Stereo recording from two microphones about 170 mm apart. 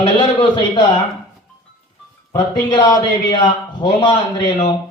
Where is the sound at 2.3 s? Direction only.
25° left (ahead or behind).